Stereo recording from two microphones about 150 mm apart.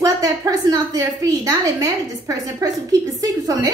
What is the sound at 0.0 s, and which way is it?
A woman's voice, 25° right (ahead or behind).